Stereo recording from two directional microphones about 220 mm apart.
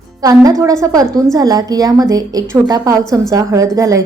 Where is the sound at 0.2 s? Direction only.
15° right (ahead or behind).